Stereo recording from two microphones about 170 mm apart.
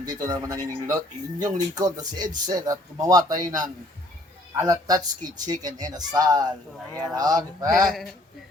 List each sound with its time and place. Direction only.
0.0 s speech: 20° right (ahead or behind)